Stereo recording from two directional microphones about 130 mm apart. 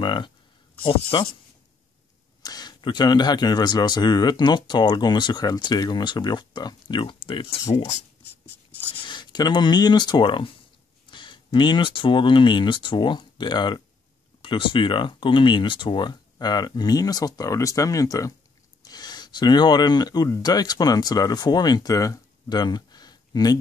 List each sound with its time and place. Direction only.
0.0 s speech: 35° left (ahead or behind)
2.4 s speech: 30° left (ahead or behind)
8.9 s speech: 35° left (ahead or behind)